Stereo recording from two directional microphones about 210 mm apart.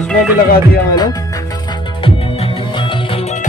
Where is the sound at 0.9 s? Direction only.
20° left (ahead or behind).